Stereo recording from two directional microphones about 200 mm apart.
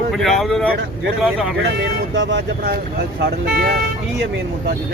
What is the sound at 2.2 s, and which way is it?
Speech, 60° right (ahead or behind).